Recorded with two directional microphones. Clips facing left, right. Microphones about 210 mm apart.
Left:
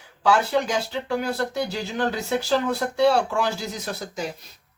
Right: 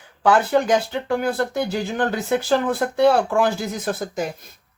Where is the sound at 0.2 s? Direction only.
50° right (ahead or behind).